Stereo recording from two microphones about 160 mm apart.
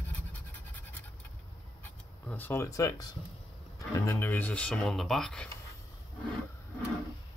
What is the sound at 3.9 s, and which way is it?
Speech, 15° left (ahead or behind).